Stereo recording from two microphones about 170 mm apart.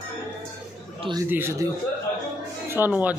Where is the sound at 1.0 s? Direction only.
25° right (ahead or behind).